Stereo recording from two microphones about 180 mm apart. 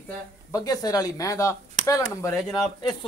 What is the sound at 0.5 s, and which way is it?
Speech, 20° left (ahead or behind).